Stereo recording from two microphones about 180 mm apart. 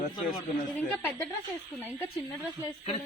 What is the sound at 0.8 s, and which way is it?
A woman's voice, 10° left (ahead or behind).